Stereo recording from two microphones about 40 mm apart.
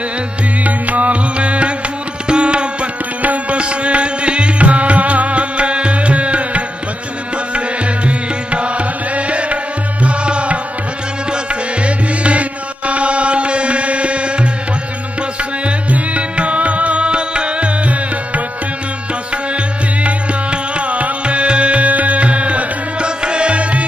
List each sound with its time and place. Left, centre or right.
0.7 s music: right
2.2 s tabla: right
3.2 s music: right
3.5 s music: right
11.8 s music: right
15.6 s music: right